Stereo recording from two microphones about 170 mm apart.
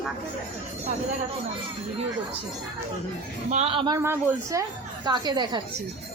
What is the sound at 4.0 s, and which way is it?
Speech, 15° right (ahead or behind).